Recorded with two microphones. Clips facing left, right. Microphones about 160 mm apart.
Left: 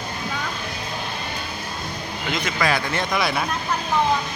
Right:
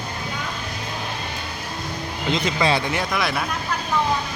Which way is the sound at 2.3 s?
25° right (ahead or behind).